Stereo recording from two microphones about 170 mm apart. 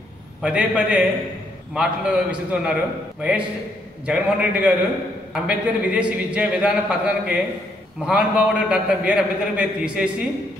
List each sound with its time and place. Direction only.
0.4 s a man's voice: 5° right (ahead or behind)